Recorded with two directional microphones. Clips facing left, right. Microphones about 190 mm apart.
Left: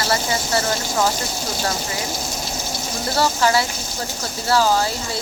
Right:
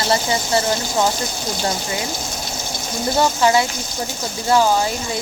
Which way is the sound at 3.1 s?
20° right (ahead or behind).